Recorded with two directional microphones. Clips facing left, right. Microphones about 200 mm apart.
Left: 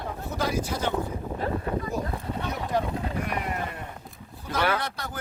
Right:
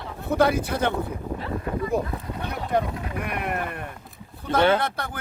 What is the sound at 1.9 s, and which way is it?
Speech, 60° right (ahead or behind).